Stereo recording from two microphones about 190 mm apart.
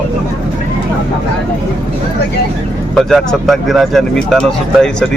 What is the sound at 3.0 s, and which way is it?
Speech, centre (ahead or behind).